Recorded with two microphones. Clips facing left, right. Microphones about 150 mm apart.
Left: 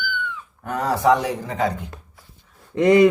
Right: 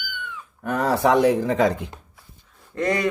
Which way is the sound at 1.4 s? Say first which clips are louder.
Right 4 dB; 90° right.